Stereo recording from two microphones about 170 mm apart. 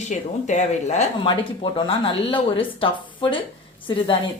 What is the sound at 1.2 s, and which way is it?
A woman's voice, 30° left (ahead or behind).